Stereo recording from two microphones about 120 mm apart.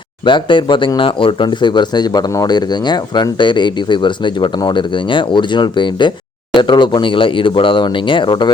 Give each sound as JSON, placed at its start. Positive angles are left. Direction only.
{"t": 0.3, "sound": "speech", "side_deg": 40}